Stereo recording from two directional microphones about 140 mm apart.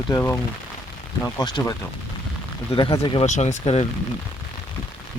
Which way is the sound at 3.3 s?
60° left (ahead or behind).